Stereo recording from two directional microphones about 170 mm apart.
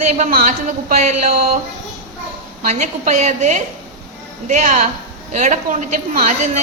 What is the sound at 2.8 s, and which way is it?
Speech, 45° right (ahead or behind).